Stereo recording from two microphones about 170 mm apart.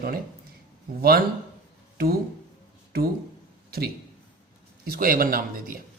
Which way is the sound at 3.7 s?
65° right (ahead or behind).